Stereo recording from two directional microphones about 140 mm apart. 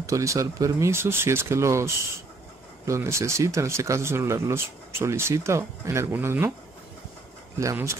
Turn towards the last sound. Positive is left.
turn(degrees=-20)  # may be behind; listen again after turning